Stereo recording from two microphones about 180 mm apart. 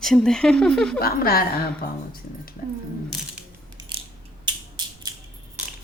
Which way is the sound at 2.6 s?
55° left (ahead or behind).